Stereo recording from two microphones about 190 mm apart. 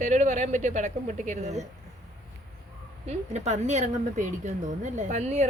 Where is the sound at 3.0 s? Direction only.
35° right (ahead or behind).